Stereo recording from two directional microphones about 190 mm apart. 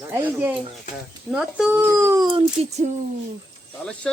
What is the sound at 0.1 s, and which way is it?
Speech, 10° right (ahead or behind).